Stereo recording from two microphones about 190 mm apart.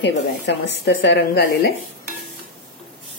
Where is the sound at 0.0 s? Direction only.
65° left (ahead or behind).